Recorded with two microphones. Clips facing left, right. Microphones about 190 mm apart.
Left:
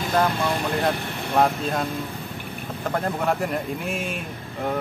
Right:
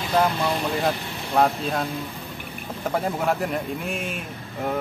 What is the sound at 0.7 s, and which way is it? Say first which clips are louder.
A man's voice: left 1 dB; centre (ahead or behind).